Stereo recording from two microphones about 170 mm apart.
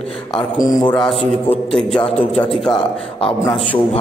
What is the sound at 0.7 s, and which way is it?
Speech, 25° left (ahead or behind).